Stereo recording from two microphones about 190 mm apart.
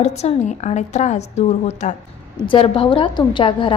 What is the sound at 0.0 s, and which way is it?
A woman's voice, 35° left (ahead or behind).